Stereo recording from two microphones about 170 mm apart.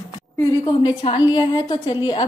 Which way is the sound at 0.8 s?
30° left (ahead or behind).